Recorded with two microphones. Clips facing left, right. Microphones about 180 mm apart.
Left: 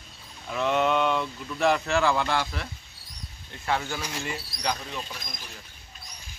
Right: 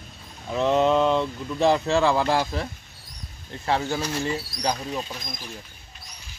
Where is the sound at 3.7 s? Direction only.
30° right (ahead or behind).